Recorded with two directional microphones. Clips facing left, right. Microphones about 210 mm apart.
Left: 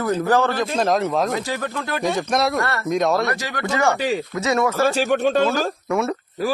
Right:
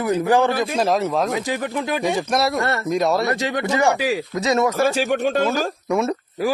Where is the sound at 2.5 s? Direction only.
20° right (ahead or behind).